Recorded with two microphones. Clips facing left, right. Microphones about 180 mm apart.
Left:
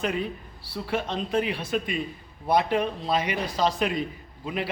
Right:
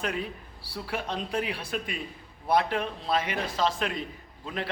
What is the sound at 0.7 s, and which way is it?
A man's voice, 5° right (ahead or behind).